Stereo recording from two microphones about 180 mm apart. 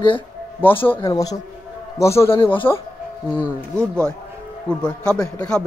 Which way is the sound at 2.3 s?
30° left (ahead or behind).